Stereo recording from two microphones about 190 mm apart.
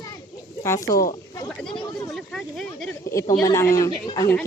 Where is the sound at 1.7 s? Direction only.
25° left (ahead or behind).